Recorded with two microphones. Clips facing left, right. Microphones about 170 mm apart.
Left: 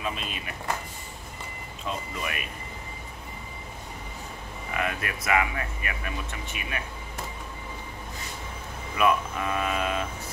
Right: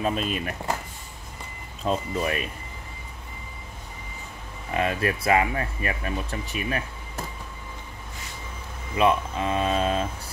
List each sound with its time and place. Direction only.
0.0 s speech: 40° right (ahead or behind)
1.9 s speech: 35° right (ahead or behind)
4.6 s speech: 30° right (ahead or behind)
8.9 s speech: 25° right (ahead or behind)